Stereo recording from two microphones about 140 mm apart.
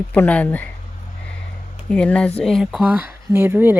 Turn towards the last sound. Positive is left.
turn(degrees=-15)  # may be behind; listen again after turning